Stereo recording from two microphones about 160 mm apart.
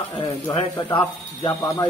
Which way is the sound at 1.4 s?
25° left (ahead or behind).